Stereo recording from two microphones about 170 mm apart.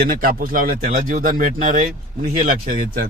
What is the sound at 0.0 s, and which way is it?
Speech, 60° right (ahead or behind).